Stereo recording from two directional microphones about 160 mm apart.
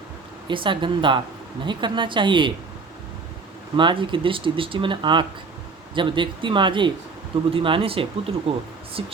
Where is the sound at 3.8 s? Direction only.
30° right (ahead or behind).